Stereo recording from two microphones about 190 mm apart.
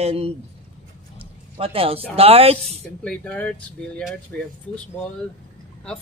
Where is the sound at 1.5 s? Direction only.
30° right (ahead or behind).